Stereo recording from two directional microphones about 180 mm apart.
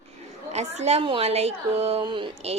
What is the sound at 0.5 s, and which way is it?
A woman's voice, 35° right (ahead or behind).